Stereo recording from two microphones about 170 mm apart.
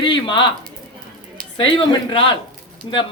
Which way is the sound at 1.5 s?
30° left (ahead or behind).